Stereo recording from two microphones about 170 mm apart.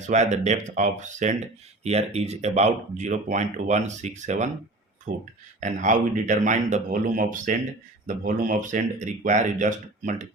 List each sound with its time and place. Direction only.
0.0 s speech: 45° right (ahead or behind)